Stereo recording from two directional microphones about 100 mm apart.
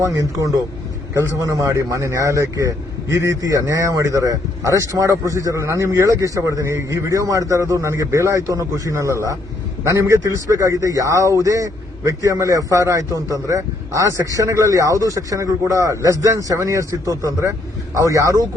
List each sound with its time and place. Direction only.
0.0 s a man's voice: 35° right (ahead or behind)